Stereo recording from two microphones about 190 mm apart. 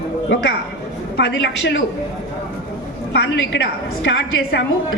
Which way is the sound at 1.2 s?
70° left (ahead or behind).